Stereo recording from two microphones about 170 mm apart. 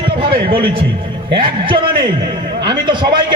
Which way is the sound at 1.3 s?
30° right (ahead or behind).